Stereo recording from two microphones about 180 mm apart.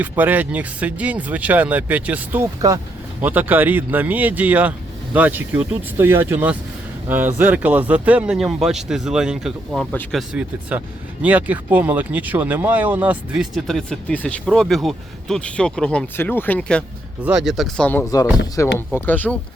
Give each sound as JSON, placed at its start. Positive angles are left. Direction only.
{"t": 0.0, "sound": "speech", "side_deg": -10}
{"t": 9.9, "sound": "speech", "side_deg": 10}
{"t": 10.2, "sound": "speech", "side_deg": -5}